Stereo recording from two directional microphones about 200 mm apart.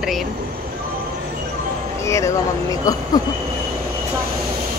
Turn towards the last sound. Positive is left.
turn(degrees=15)  # may be behind; listen again after turning